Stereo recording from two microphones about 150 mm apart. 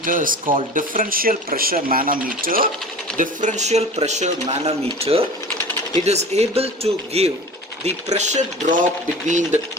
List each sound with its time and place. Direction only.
0.0 s speech: 65° right (ahead or behind)
3.2 s speech: 55° right (ahead or behind)